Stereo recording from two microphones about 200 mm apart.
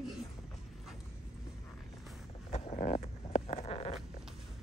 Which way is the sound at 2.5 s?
30° left (ahead or behind).